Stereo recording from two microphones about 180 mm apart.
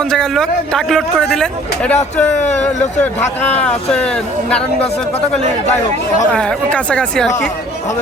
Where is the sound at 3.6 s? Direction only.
5° left (ahead or behind).